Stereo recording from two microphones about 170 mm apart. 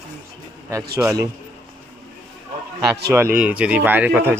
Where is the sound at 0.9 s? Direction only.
15° right (ahead or behind).